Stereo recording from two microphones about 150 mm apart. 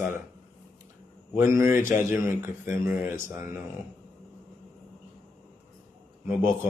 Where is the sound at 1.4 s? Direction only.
20° right (ahead or behind).